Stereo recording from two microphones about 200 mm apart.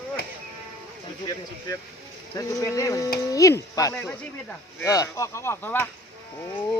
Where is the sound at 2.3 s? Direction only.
15° left (ahead or behind).